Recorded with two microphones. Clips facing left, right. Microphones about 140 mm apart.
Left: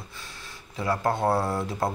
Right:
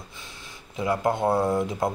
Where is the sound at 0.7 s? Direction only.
15° right (ahead or behind).